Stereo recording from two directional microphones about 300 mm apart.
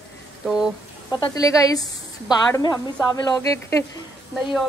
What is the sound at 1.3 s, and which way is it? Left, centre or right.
A woman's voice, centre.